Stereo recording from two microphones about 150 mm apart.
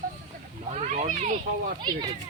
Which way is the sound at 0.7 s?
50° right (ahead or behind).